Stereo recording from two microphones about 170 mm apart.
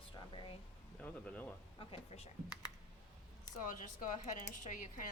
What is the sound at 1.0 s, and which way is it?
Speech, 10° left (ahead or behind).